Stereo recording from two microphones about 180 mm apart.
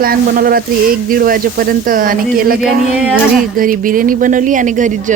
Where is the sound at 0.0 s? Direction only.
55° right (ahead or behind).